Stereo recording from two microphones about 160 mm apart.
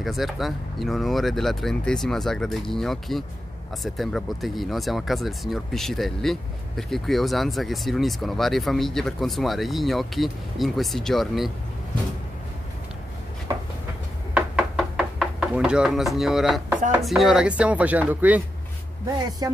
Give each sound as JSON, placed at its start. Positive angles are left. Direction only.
{"t": 0.0, "sound": "speech", "side_deg": 0}
{"t": 14.3, "sound": "knock", "side_deg": -5}
{"t": 16.9, "sound": "speech", "side_deg": 0}
{"t": 19.4, "sound": "speech", "side_deg": -25}